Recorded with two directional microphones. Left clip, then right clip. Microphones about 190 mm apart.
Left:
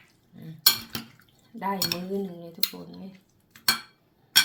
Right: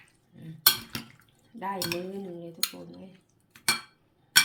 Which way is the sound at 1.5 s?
25° left (ahead or behind).